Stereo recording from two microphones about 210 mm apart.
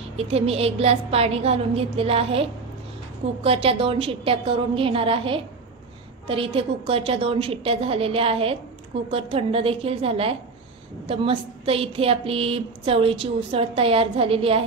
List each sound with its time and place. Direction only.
0.2 s a woman's voice: 30° right (ahead or behind)